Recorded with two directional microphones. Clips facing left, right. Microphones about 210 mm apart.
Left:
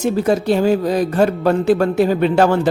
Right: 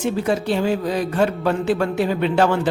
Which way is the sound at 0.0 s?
40° left (ahead or behind).